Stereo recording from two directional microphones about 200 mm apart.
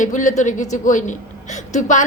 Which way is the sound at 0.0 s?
40° left (ahead or behind).